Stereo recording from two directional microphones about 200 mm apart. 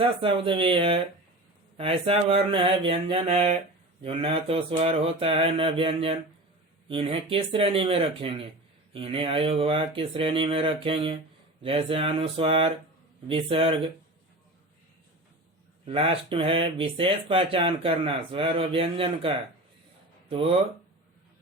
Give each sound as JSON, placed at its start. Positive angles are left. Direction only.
{"t": 0.0, "sound": "speech", "side_deg": -25}
{"t": 15.9, "sound": "speech", "side_deg": -25}
{"t": 20.3, "sound": "speech", "side_deg": -25}